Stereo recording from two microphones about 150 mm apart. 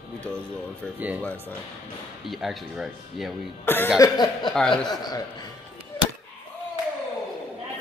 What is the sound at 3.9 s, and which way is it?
Speech, 30° left (ahead or behind).